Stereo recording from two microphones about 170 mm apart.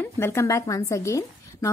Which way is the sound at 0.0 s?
15° left (ahead or behind).